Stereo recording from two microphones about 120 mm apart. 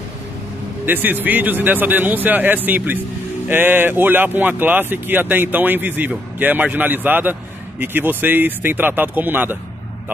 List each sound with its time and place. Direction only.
0.8 s speech: 15° right (ahead or behind)